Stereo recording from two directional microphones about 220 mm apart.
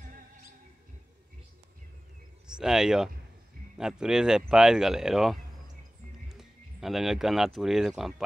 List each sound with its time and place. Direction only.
2.4 s speech: 5° right (ahead or behind)